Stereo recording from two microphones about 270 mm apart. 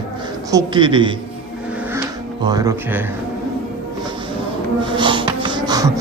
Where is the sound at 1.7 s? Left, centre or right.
Centre.